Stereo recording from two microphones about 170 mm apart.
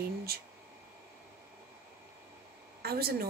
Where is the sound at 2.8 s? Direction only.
65° right (ahead or behind).